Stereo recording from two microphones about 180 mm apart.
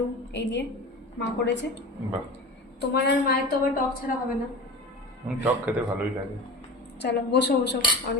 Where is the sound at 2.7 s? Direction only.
65° left (ahead or behind).